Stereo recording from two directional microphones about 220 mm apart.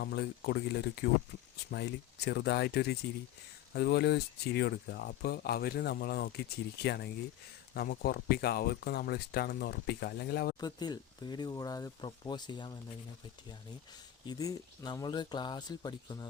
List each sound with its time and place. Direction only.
0.0 s speech: 45° left (ahead or behind)
10.6 s speech: 20° left (ahead or behind)
14.3 s speech: 15° left (ahead or behind)